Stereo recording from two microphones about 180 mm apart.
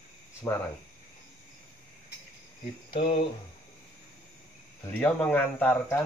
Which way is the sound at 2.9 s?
35° left (ahead or behind).